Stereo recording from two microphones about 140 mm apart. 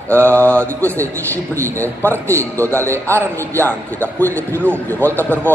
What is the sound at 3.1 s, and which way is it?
A man's voice, 15° left (ahead or behind).